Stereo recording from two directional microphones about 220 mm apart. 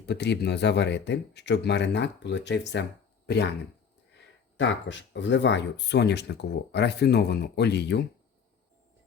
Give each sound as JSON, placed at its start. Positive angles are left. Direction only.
{"t": 0.0, "sound": "speech", "side_deg": 50}
{"t": 4.5, "sound": "speech", "side_deg": 55}